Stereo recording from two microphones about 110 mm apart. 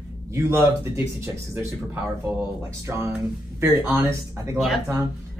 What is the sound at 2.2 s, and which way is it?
A man's voice, 20° right (ahead or behind).